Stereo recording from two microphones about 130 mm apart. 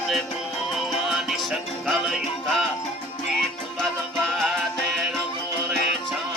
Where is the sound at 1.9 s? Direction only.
Centre (ahead or behind).